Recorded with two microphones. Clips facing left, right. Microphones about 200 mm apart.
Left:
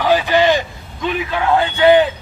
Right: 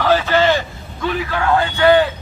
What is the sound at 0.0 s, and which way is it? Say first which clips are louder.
A man's voice: left 1 dB; 15° left (ahead or behind).